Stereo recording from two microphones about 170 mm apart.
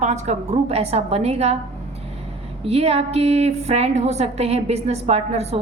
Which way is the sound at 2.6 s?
35° right (ahead or behind).